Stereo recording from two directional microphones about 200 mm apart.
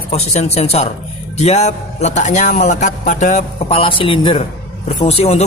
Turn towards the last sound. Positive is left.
turn(degrees=30)  # may be behind; listen again after turning